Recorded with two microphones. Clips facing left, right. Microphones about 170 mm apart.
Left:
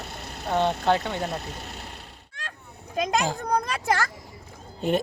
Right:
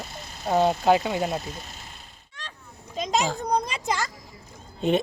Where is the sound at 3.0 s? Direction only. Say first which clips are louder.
Even; 55° left (ahead or behind).